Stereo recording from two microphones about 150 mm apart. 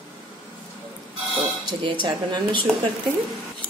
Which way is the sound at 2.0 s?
35° right (ahead or behind).